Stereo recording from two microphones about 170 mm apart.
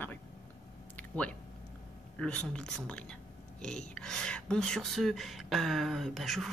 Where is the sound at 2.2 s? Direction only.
5° left (ahead or behind).